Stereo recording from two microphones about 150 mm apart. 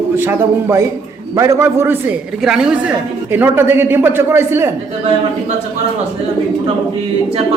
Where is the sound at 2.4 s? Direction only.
5° right (ahead or behind).